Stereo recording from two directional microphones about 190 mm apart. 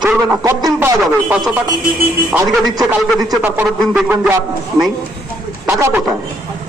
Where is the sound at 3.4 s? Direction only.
10° right (ahead or behind).